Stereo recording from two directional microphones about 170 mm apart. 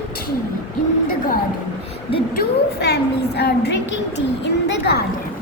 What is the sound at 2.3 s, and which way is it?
A woman's voice, 70° left (ahead or behind).